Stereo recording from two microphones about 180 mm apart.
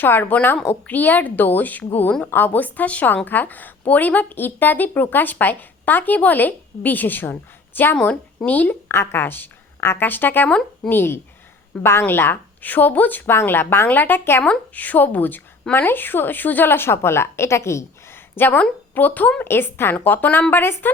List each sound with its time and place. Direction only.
0.0 s a woman's voice: 10° left (ahead or behind)